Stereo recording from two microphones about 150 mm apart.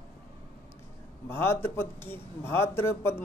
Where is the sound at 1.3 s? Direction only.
15° left (ahead or behind).